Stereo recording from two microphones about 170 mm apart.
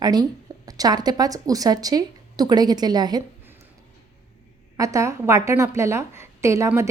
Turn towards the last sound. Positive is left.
turn(degrees=-15)  # may be behind; listen again after turning